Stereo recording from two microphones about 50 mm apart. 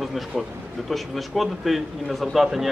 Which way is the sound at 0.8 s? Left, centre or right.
Centre.